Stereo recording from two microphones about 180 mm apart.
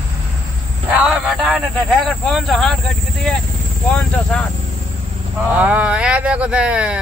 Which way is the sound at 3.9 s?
5° left (ahead or behind).